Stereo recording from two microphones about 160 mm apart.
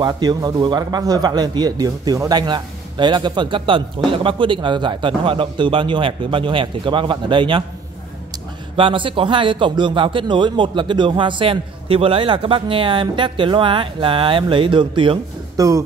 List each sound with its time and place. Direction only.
0.0 s a man's voice: 25° right (ahead or behind)
8.7 s speech: 30° right (ahead or behind)